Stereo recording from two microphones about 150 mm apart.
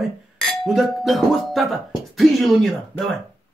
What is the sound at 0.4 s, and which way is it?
Speech, centre (ahead or behind).